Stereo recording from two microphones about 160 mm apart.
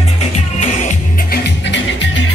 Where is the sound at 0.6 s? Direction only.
45° left (ahead or behind).